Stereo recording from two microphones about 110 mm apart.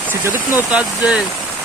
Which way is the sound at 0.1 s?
20° right (ahead or behind).